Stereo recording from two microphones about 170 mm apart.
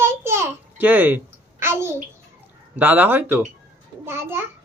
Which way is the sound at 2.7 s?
10° right (ahead or behind).